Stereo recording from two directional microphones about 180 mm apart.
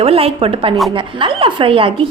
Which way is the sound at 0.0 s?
30° right (ahead or behind).